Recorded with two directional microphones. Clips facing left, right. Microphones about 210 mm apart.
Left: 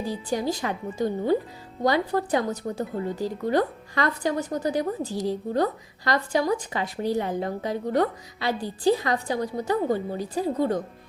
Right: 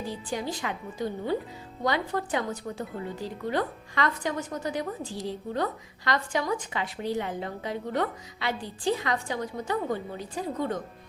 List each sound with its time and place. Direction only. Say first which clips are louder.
0.1 s speech: left 8 dB; 40° left (ahead or behind)